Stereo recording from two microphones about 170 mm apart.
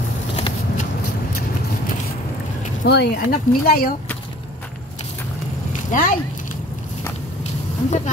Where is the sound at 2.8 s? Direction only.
65° left (ahead or behind).